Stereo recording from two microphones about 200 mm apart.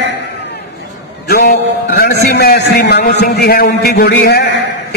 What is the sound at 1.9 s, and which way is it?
A man's voice, 50° left (ahead or behind).